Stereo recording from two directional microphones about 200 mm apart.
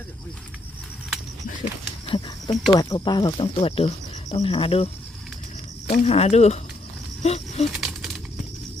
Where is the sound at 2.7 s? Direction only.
20° left (ahead or behind).